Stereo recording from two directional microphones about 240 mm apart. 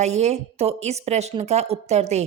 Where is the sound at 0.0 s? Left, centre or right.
Right.